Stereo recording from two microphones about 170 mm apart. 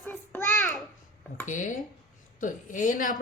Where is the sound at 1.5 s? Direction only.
50° left (ahead or behind).